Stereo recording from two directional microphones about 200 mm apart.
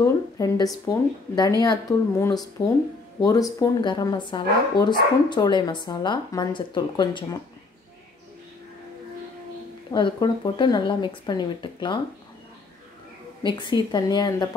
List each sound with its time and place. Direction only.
0.0 s speech: 20° left (ahead or behind)
9.8 s speech: 20° left (ahead or behind)
13.4 s speech: 25° left (ahead or behind)